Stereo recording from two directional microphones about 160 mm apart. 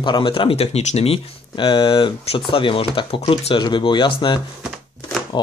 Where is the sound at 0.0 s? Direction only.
30° left (ahead or behind).